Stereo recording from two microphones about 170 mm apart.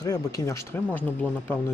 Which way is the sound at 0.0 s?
20° left (ahead or behind).